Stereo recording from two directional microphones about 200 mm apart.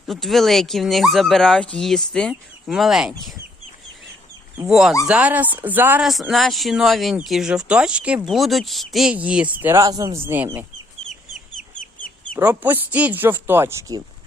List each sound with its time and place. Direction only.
0.1 s speech: centre (ahead or behind)
4.7 s speech: centre (ahead or behind)
11.1 s chicken: 40° left (ahead or behind)
12.4 s speech: 10° right (ahead or behind)